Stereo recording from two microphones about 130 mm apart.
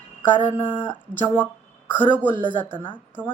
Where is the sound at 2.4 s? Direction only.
40° right (ahead or behind).